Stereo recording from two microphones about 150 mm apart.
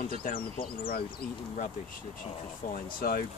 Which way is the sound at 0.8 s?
80° left.